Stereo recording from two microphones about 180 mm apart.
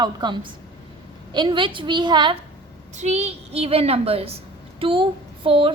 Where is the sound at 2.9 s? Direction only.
40° right (ahead or behind).